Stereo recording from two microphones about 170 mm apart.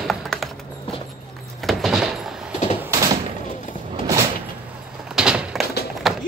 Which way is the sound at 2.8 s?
20° right (ahead or behind).